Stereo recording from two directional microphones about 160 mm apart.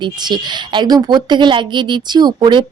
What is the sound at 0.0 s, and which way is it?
A woman's voice, 25° right (ahead or behind).